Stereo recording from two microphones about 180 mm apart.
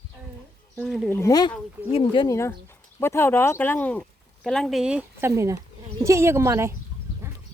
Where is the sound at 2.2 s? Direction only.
15° left (ahead or behind); by 5.3 s 5° right (ahead or behind).